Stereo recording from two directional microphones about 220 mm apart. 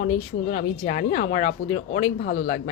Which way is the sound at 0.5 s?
40° left (ahead or behind).